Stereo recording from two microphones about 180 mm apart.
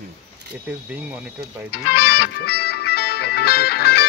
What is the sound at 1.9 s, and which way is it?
Music, 60° left (ahead or behind).